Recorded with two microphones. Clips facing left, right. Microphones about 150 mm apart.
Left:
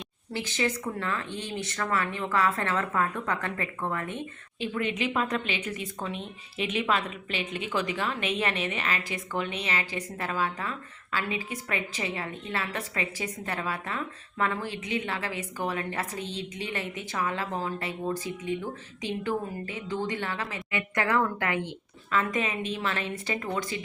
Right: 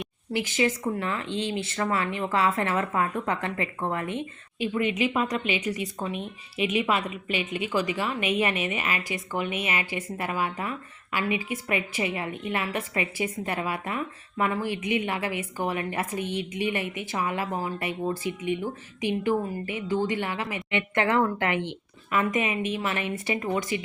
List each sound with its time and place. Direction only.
0.3 s a woman's voice: 15° right (ahead or behind)